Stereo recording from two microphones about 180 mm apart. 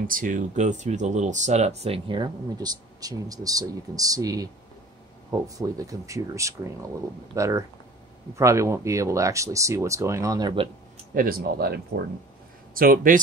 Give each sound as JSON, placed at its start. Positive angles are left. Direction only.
{"t": 0.0, "sound": "speech", "side_deg": -50}
{"t": 11.1, "sound": "speech", "side_deg": -55}